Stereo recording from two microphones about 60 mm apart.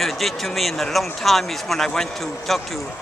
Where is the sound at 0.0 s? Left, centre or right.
Centre.